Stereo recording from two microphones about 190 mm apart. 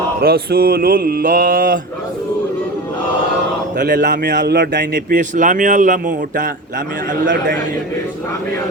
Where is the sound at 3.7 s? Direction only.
50° right (ahead or behind).